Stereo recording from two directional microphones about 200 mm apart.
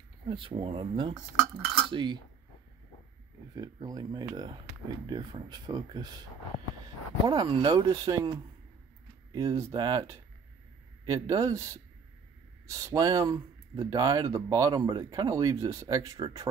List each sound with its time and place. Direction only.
0.3 s speech: 25° right (ahead or behind)
3.5 s speech: 20° right (ahead or behind)
7.2 s speech: 25° right (ahead or behind)